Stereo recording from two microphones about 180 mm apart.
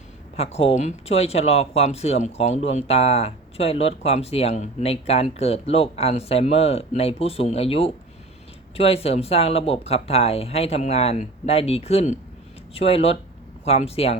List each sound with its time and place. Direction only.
0.3 s speech: 35° left (ahead or behind)